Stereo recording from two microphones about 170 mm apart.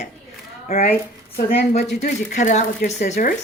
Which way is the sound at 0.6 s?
55° left (ahead or behind).